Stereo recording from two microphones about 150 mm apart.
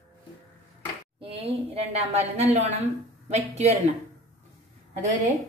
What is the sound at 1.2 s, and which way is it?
A woman's voice, 40° right (ahead or behind).